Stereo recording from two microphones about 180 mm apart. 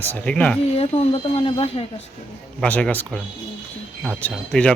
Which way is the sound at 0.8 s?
35° left (ahead or behind).